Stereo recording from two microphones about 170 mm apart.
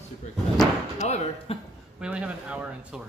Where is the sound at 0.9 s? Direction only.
40° left (ahead or behind).